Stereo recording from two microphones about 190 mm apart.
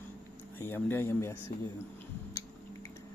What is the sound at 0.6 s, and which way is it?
Speech, 10° left (ahead or behind).